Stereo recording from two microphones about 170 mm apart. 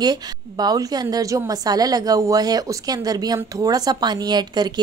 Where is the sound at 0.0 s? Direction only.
25° right (ahead or behind).